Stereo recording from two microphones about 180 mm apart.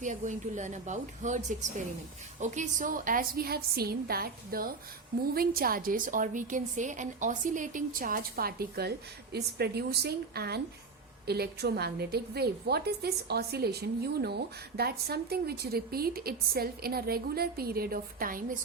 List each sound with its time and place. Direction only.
0.0 s a woman's voice: 45° right (ahead or behind)